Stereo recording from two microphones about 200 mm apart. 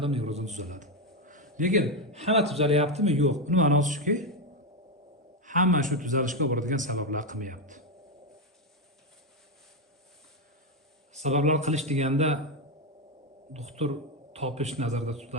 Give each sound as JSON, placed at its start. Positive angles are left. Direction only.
{"t": 0.0, "sound": "a man's voice", "side_deg": -30}
{"t": 1.1, "sound": "a sound", "side_deg": -40}
{"t": 1.5, "sound": "a man's voice", "side_deg": -40}
{"t": 5.5, "sound": "a man's voice", "side_deg": -40}
{"t": 11.1, "sound": "a man's voice", "side_deg": -35}
{"t": 13.5, "sound": "a man's voice", "side_deg": -35}